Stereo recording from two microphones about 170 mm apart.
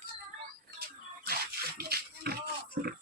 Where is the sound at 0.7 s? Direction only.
65° right (ahead or behind).